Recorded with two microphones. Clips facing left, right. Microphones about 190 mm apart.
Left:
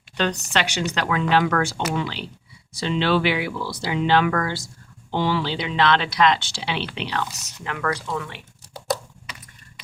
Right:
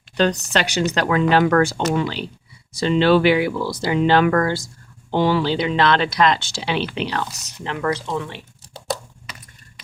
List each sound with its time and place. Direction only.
0.2 s speech: 40° right (ahead or behind)
7.6 s speech: 25° right (ahead or behind)